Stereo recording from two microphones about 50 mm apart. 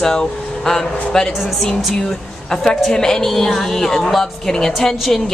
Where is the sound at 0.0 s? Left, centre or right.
Centre.